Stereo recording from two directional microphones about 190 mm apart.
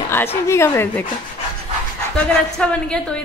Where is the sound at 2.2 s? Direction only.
5° left (ahead or behind).